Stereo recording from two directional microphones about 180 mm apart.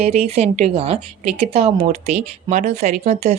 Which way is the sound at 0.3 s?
35° right (ahead or behind).